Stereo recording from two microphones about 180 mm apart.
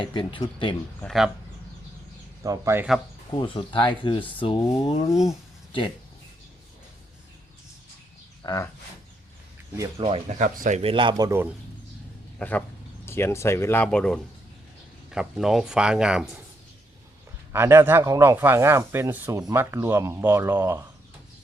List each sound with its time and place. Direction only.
0.0 s speech: 25° left (ahead or behind)
1.0 s speech: centre (ahead or behind)
2.4 s speech: 15° right (ahead or behind)
3.3 s speech: 30° left (ahead or behind)
5.1 s speech: centre (ahead or behind)
8.4 s a sound: 25° left (ahead or behind)
10.0 s speech: 35° right (ahead or behind)
11.3 s speech: 10° right (ahead or behind)
12.4 s speech: 10° left (ahead or behind)
17.5 s speech: 15° right (ahead or behind)